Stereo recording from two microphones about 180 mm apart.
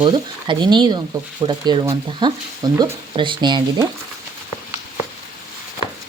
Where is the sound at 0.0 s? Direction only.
25° right (ahead or behind).